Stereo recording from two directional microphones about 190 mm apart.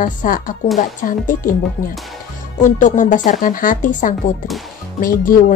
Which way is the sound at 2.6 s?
40° left (ahead or behind).